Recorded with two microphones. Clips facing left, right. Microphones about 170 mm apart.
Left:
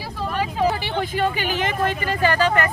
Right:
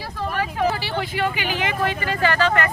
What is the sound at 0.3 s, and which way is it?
Vehicle, 15° left (ahead or behind).